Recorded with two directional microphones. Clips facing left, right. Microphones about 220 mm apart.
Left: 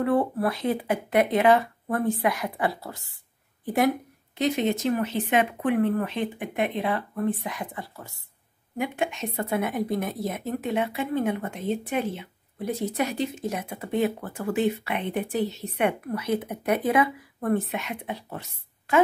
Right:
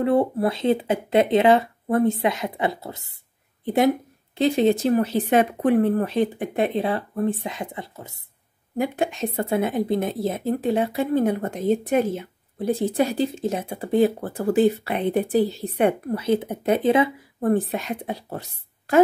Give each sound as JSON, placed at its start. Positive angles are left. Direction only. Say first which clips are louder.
{"t": 0.0, "sound": "speech", "louder": "right 3 dB", "side_deg": -25}
{"t": 8.7, "sound": "speech", "louder": "right 4 dB", "side_deg": -35}
{"t": 12.6, "sound": "speech", "louder": "right 6 dB", "side_deg": -30}